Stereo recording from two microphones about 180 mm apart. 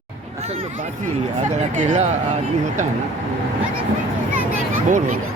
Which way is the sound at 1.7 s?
45° right (ahead or behind).